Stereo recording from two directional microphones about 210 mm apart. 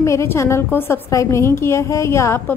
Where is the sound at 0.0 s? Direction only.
15° left (ahead or behind).